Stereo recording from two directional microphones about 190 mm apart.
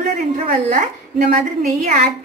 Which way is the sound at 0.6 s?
40° right (ahead or behind).